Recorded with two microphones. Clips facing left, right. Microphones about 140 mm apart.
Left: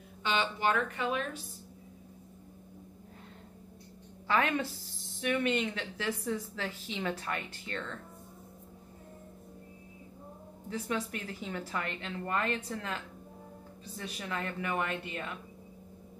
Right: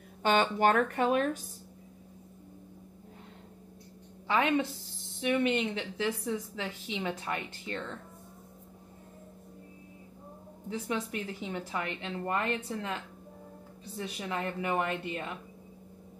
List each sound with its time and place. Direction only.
0.2 s speech: 50° right (ahead or behind)
4.3 s a woman's voice: 20° right (ahead or behind)
10.7 s speech: 20° right (ahead or behind)